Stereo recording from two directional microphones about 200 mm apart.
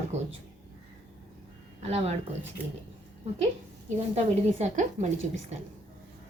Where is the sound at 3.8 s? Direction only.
35° right (ahead or behind).